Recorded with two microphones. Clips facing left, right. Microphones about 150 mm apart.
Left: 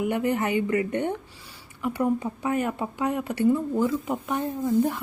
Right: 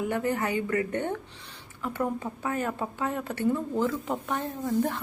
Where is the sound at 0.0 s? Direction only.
15° left (ahead or behind).